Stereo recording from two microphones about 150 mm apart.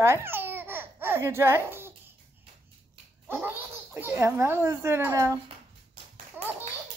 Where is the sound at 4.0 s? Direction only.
15° right (ahead or behind).